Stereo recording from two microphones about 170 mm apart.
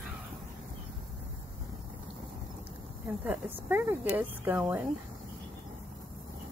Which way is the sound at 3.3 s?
10° right (ahead or behind).